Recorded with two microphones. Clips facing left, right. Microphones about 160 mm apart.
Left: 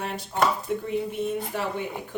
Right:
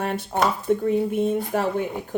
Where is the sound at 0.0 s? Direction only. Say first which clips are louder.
Right 6 dB; 55° right (ahead or behind).